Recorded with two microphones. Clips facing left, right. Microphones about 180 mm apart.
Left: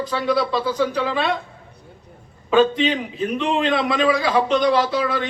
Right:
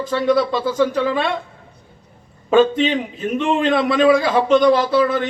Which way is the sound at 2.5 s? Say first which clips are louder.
Right 2 dB; 45° right (ahead or behind).